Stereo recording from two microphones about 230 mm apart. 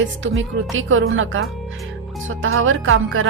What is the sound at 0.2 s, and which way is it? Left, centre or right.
A woman's voice, right.